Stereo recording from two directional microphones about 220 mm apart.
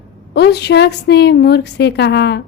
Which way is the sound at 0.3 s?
50° left (ahead or behind).